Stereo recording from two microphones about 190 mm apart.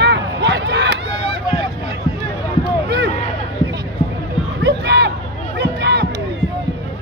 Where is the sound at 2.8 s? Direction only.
65° right (ahead or behind).